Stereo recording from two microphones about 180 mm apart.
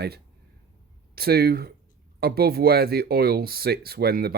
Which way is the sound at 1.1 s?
60° right (ahead or behind).